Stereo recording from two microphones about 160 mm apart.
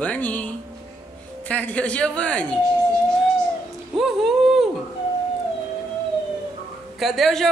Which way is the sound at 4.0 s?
Centre (ahead or behind).